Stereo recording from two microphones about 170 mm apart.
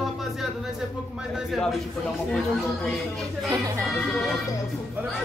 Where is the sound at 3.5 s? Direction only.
20° right (ahead or behind).